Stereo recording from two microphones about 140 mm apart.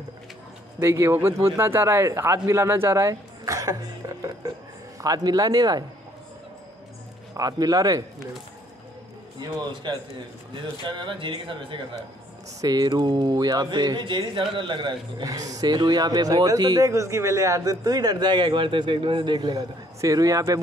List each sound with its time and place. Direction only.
0.7 s speech: 20° right (ahead or behind)
7.3 s speech: 25° right (ahead or behind)
9.4 s speech: 35° right (ahead or behind)
12.5 s speech: 25° right (ahead or behind)